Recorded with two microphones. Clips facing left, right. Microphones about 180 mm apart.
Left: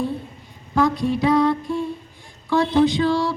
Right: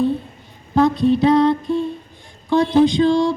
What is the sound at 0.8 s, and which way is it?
Music, 25° right (ahead or behind).